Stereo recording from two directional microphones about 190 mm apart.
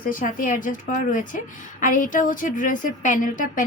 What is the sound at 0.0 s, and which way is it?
A woman's voice, 45° left (ahead or behind).